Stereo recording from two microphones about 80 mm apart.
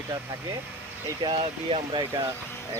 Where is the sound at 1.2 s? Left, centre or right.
Right.